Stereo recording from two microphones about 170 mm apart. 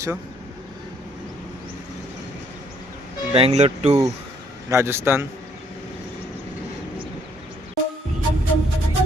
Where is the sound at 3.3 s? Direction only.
40° right (ahead or behind).